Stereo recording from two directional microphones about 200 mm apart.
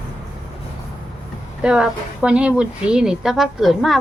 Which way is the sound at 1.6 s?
5° right (ahead or behind).